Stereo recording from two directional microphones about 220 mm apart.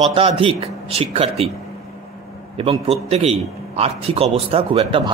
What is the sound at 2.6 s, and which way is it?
A man's voice, 25° right (ahead or behind).